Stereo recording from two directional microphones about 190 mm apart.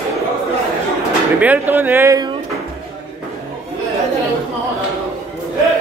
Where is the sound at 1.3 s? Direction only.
10° right (ahead or behind).